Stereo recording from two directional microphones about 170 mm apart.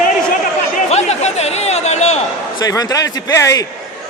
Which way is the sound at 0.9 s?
40° left (ahead or behind).